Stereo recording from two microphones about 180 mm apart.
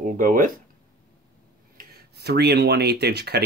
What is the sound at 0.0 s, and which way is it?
Speech, 50° right (ahead or behind).